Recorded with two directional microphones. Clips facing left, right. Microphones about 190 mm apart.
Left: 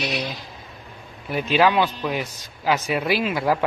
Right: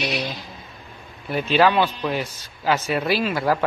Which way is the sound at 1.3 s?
10° left (ahead or behind).